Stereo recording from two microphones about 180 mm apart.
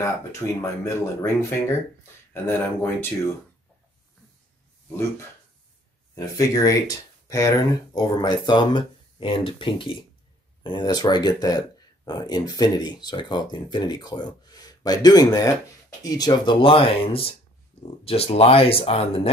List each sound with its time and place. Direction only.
0.6 s speech: 15° left (ahead or behind)
6.1 s speech: 20° left (ahead or behind)